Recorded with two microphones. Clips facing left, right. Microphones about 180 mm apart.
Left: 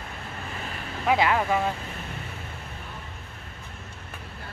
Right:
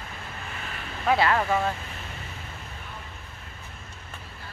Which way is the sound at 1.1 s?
10° left (ahead or behind).